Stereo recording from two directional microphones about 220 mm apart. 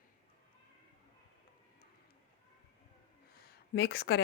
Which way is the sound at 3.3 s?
45° left (ahead or behind).